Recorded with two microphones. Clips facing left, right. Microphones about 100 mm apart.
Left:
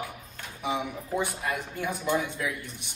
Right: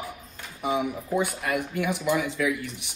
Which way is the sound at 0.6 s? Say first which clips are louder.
Right 4 dB; 55° right (ahead or behind).